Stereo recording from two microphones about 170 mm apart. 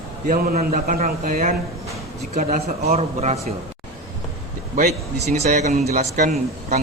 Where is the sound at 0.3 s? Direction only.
55° right (ahead or behind); by 3.3 s 40° right (ahead or behind).